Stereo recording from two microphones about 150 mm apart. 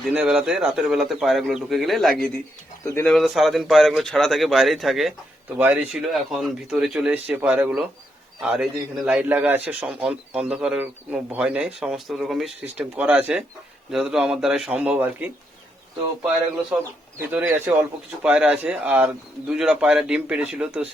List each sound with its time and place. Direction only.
0.1 s speech: 5° right (ahead or behind)
2.8 s speech: 15° left (ahead or behind)
3.1 s speech: centre (ahead or behind)
5.5 s a man's voice: 15° right (ahead or behind)
5.9 s a man's voice: centre (ahead or behind)
17.2 s a man's voice: 15° right (ahead or behind)